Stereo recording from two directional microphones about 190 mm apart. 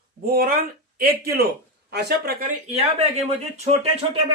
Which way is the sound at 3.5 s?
35° right (ahead or behind).